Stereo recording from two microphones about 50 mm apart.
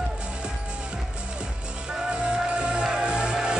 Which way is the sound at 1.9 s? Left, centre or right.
Centre.